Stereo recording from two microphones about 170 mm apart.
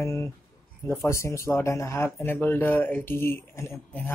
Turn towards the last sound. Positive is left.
turn(degrees=15)  # may be behind; listen again after turning